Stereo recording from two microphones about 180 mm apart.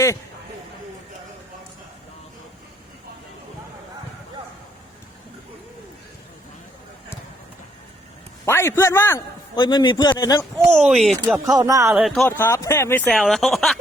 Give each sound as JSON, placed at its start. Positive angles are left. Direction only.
{"t": 8.4, "sound": "a man's voice", "side_deg": 15}
{"t": 9.6, "sound": "a man's voice", "side_deg": 25}
{"t": 10.8, "sound": "speech", "side_deg": 0}
{"t": 11.3, "sound": "speech", "side_deg": -20}
{"t": 11.9, "sound": "speech", "side_deg": 0}
{"t": 12.4, "sound": "speech", "side_deg": 15}